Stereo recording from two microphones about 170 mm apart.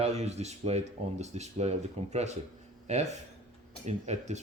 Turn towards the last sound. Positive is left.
turn(degrees=-40)  # may be behind; listen again after turning